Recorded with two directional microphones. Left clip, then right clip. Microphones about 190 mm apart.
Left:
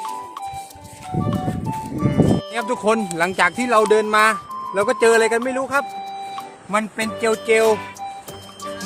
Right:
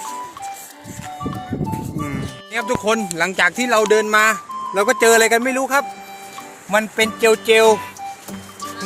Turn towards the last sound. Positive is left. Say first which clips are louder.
# right 4 dB
turn(degrees=-20)  # may be behind; listen again after turning